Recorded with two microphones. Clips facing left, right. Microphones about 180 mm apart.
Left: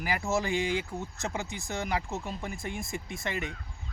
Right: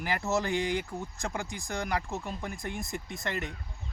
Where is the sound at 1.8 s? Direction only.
20° left (ahead or behind).